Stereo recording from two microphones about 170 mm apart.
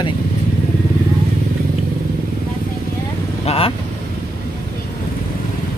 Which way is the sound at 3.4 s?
35° left (ahead or behind).